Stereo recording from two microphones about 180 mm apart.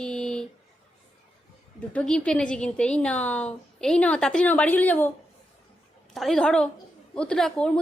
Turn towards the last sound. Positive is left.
turn(degrees=5)  # may be behind; listen again after turning